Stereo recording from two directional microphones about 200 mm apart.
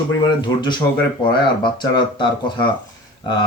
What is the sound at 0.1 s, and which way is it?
Speech, 20° left (ahead or behind).